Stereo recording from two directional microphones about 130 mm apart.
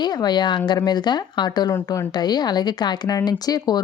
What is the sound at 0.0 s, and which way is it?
Speech, 35° left (ahead or behind).